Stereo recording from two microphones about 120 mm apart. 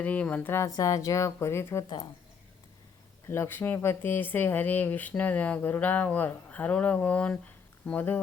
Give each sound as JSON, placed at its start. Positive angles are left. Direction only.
{"t": 0.0, "sound": "speech", "side_deg": 10}
{"t": 3.2, "sound": "speech", "side_deg": 20}